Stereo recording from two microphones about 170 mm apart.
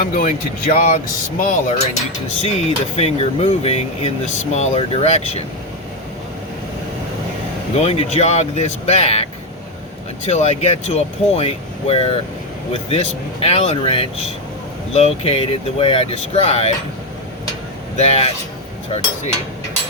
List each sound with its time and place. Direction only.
0.0 s speech: 55° left (ahead or behind)
7.8 s speech: 40° left (ahead or behind)
10.2 s speech: 40° left (ahead or behind)
13.4 s speech: 40° left (ahead or behind)
17.9 s speech: 40° left (ahead or behind)